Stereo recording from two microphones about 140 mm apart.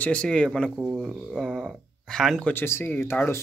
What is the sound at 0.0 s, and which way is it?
Speech, 10° left (ahead or behind).